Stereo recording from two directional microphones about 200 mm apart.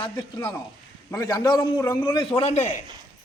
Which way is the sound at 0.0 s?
20° left (ahead or behind).